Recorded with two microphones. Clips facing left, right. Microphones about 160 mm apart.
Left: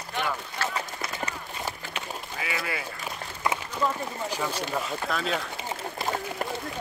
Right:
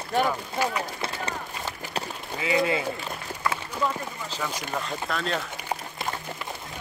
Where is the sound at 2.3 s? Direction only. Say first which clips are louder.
Right 10 dB; 25° right (ahead or behind).